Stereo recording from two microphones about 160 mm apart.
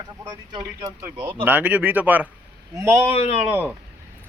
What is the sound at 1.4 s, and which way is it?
Speech, 10° right (ahead or behind).